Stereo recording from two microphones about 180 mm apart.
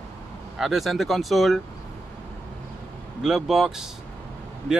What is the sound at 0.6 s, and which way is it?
Speech, centre (ahead or behind).